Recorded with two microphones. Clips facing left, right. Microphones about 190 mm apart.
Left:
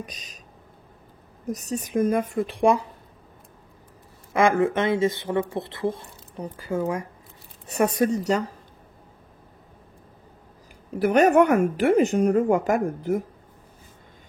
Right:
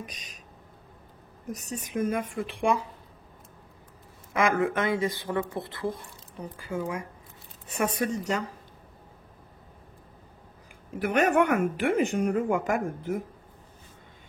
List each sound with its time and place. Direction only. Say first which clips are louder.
0.0 s a woman's voice: left 3 dB; 35° left (ahead or behind)
1.5 s a woman's voice: left 7 dB; 35° left (ahead or behind)
4.4 s a woman's voice: left 5 dB; 30° left (ahead or behind)
11.0 s a woman's voice: left 6 dB; 35° left (ahead or behind)